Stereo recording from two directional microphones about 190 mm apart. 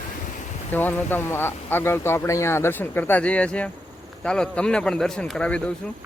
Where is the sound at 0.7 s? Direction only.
10° left (ahead or behind).